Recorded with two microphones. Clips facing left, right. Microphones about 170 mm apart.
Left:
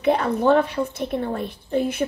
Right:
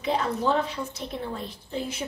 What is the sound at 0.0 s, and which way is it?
A woman's voice, 60° left (ahead or behind).